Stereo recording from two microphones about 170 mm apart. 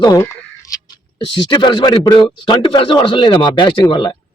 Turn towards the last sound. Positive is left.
turn(degrees=30)  # may be behind; listen again after turning